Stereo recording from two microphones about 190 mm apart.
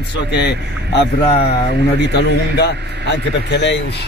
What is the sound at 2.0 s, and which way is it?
A man's voice, 60° left (ahead or behind).